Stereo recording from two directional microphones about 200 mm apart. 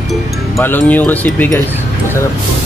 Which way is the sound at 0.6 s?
10° left (ahead or behind).